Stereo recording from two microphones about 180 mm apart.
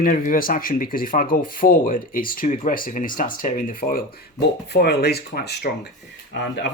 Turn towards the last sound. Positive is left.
turn(degrees=70)  # may be behind; listen again after turning